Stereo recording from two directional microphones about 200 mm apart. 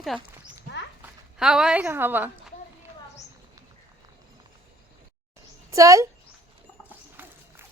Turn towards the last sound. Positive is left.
turn(degrees=-15)  # may be behind; listen again after turning